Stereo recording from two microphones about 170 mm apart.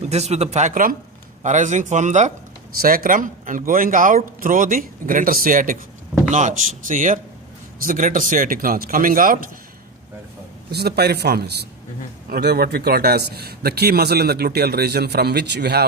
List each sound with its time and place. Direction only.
0.0 s speech: 40° right (ahead or behind)
2.7 s speech: 60° right (ahead or behind)
10.7 s a man's voice: 70° right (ahead or behind)